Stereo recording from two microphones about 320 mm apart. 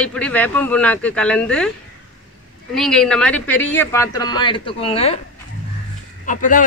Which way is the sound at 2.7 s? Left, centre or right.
Centre.